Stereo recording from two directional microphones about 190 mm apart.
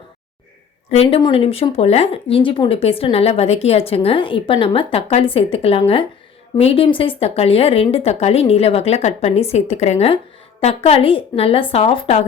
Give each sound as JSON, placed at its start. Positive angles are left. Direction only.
{"t": 0.9, "sound": "a woman's voice", "side_deg": 30}